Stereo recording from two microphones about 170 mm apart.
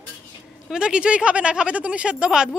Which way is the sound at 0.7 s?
5° right (ahead or behind).